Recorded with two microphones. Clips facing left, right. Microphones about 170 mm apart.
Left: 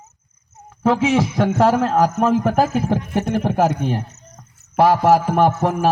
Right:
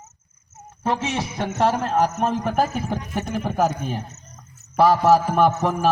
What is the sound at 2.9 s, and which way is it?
A man's voice, 55° left (ahead or behind).